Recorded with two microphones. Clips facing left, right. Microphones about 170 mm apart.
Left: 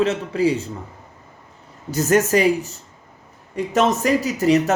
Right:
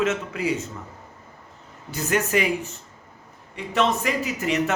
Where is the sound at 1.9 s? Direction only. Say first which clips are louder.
Left 6 dB; 40° left (ahead or behind).